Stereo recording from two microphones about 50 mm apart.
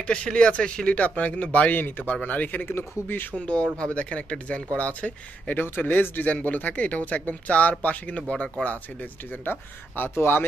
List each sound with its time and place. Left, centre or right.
0.0 s speech: left
3.3 s speech: left
9.4 s speech: left